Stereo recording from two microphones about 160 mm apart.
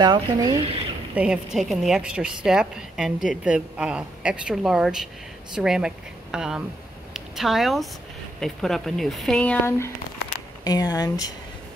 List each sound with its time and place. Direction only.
0.0 s speech: 25° right (ahead or behind)
1.1 s a woman's voice: 5° right (ahead or behind); by 11.3 s 25° left (ahead or behind)